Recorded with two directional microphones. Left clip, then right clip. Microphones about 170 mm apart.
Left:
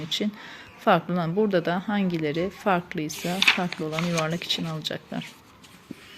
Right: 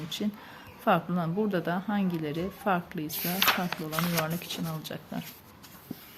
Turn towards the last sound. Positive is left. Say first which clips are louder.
# left 7 dB
turn(degrees=20)  # may be behind; listen again after turning